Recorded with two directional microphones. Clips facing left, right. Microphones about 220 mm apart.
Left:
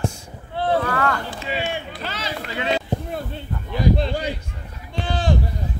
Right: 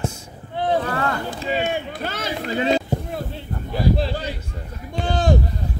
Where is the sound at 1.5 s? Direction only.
45° right (ahead or behind).